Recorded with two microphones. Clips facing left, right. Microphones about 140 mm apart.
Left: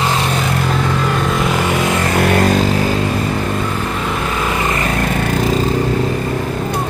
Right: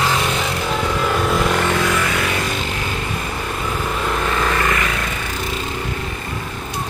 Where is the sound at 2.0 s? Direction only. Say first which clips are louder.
Left 8 dB; 50° left (ahead or behind).